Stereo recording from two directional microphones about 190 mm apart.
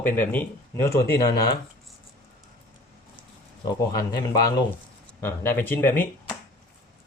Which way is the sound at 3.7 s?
20° left (ahead or behind).